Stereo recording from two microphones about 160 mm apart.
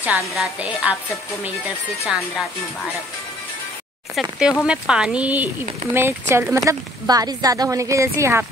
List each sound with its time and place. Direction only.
0.0 s a woman's voice: 5° right (ahead or behind)
4.1 s a woman's voice: 5° right (ahead or behind)